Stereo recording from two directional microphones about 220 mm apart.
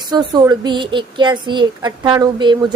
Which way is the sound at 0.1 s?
20° right (ahead or behind).